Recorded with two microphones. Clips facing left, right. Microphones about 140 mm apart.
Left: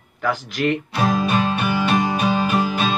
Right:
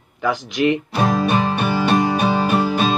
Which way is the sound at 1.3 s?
30° right (ahead or behind).